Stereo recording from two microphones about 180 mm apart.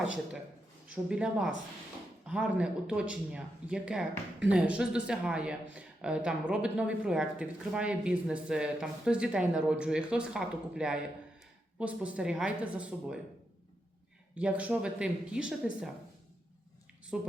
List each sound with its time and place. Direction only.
0.9 s a woman's voice: 5° right (ahead or behind)
14.3 s a woman's voice: 5° right (ahead or behind)
17.1 s a woman's voice: 5° right (ahead or behind)